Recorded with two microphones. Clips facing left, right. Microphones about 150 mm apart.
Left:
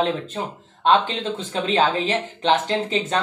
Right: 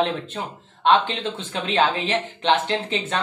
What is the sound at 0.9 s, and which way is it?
Speech, 40° left (ahead or behind).